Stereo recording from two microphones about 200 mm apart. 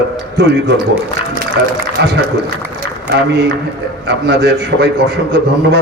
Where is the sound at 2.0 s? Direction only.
60° right (ahead or behind).